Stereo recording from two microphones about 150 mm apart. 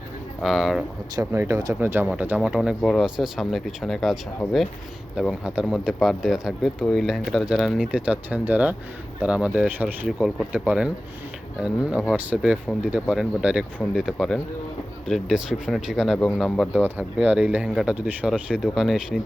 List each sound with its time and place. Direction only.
0.4 s speech: centre (ahead or behind)
1.1 s speech: 15° right (ahead or behind); by 16.8 s centre (ahead or behind)
16.8 s speech: 10° right (ahead or behind)